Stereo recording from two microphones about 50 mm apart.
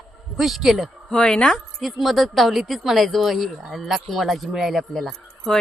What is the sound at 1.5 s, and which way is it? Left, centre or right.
Speech, centre.